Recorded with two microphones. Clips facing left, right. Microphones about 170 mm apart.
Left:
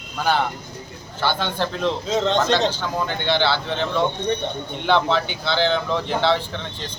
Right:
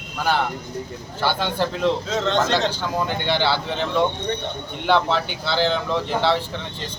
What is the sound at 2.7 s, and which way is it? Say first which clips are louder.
Speech: even; 10° right (ahead or behind).